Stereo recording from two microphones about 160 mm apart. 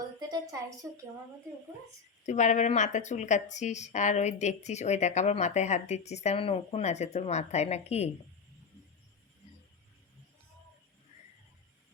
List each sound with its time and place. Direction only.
0.2 s a woman's voice: 25° right (ahead or behind)
2.2 s a woman's voice: 50° left (ahead or behind)